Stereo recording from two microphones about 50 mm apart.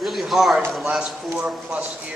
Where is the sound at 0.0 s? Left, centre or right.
Centre.